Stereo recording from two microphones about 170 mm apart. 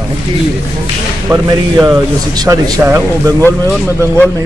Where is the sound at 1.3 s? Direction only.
15° right (ahead or behind).